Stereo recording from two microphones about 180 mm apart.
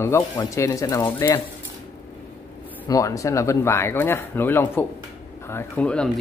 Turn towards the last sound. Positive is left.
turn(degrees=5)  # may be behind; listen again after turning